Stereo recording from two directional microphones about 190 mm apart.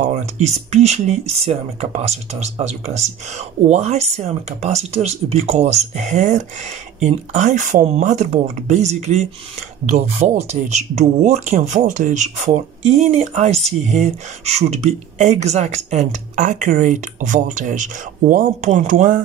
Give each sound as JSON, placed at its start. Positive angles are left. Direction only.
{"t": 0.0, "sound": "speech", "side_deg": -35}